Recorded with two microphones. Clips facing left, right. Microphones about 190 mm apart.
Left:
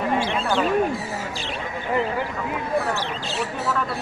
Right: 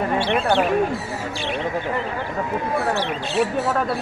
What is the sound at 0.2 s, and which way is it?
Speech, 65° right (ahead or behind).